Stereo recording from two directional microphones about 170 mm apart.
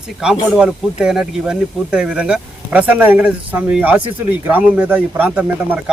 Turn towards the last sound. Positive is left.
turn(degrees=-10)  # may be behind; listen again after turning